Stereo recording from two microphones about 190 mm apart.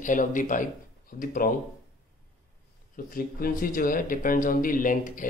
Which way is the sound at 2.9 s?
45° left (ahead or behind).